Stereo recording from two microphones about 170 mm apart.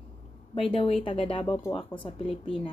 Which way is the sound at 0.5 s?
35° left (ahead or behind).